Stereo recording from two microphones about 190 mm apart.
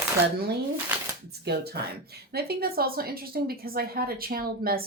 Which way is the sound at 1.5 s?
60° right (ahead or behind).